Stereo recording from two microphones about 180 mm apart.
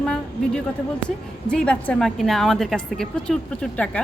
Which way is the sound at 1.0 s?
5° left (ahead or behind).